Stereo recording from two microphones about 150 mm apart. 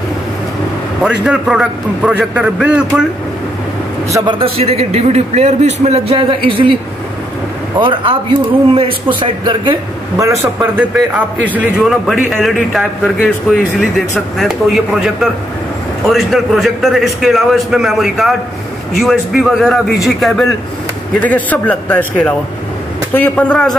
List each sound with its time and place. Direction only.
1.2 s a man's voice: 5° right (ahead or behind)
4.3 s a man's voice: 40° right (ahead or behind)
7.8 s a man's voice: 35° right (ahead or behind); by 11.2 s 15° right (ahead or behind)
11.5 s a man's voice: 5° right (ahead or behind)